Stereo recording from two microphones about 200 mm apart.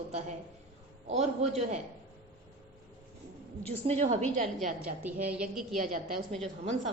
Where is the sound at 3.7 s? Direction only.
35° right (ahead or behind).